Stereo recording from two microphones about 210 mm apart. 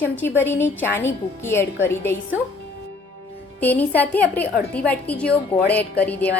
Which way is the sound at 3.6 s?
10° left (ahead or behind).